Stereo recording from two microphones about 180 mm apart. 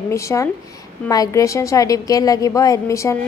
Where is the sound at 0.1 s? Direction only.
15° left (ahead or behind).